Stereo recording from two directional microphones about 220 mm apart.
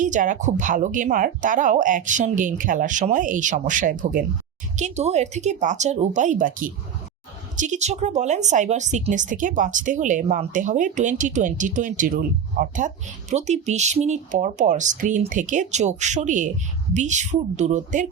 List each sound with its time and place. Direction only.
0.0 s speech: 35° right (ahead or behind)